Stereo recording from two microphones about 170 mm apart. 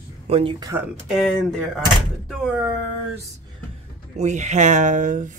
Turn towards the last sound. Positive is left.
turn(degrees=-50)  # may be behind; listen again after turning